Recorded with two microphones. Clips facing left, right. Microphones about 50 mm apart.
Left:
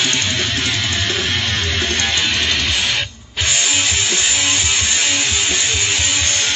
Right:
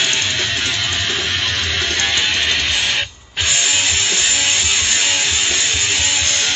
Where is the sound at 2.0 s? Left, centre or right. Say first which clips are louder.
Right 2 dB; right.